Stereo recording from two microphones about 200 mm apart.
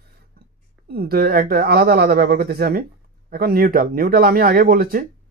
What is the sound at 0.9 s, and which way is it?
Speech, 50° right (ahead or behind).